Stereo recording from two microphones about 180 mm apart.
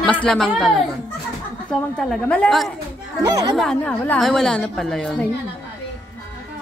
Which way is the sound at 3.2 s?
20° right (ahead or behind).